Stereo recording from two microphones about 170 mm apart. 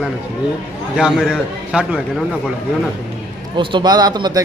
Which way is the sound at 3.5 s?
30° right (ahead or behind).